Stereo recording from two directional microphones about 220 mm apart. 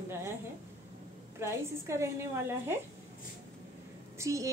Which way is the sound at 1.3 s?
10° right (ahead or behind).